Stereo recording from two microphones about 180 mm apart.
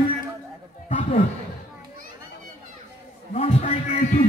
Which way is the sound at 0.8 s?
45° left (ahead or behind).